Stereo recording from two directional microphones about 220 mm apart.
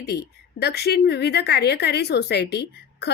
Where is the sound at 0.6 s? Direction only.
50° left (ahead or behind).